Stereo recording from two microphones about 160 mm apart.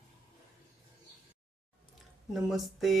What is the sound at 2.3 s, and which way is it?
Speech, centre (ahead or behind).